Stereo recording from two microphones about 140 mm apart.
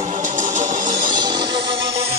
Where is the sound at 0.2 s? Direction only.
65° right (ahead or behind).